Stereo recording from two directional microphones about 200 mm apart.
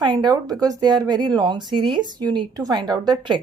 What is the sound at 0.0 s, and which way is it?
A woman's voice, 20° right (ahead or behind).